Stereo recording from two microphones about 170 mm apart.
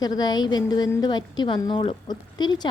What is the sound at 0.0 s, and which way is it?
A woman's voice, 25° left (ahead or behind).